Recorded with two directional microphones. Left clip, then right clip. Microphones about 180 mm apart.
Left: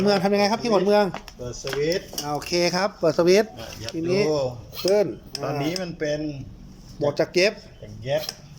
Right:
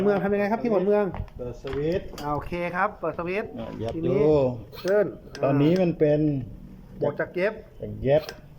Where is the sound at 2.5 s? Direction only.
25° left (ahead or behind).